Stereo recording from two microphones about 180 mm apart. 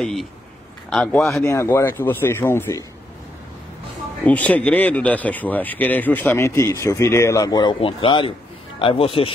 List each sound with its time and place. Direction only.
0.0 s a man's voice: centre (ahead or behind)
4.3 s speech: 5° left (ahead or behind); by 9.3 s 30° left (ahead or behind)